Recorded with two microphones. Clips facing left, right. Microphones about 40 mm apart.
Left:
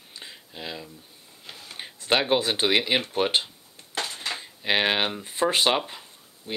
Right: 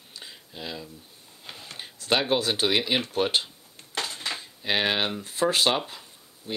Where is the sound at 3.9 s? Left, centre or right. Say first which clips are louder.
Left 1 dB; left.